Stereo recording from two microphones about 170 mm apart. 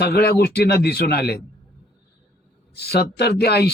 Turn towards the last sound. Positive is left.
turn(degrees=70)  # may be behind; listen again after turning